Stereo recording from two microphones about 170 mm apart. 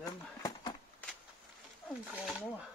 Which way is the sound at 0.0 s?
20° left (ahead or behind).